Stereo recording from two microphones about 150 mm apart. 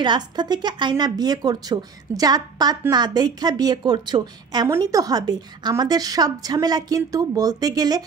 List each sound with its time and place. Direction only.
0.0 s a woman's voice: 30° right (ahead or behind)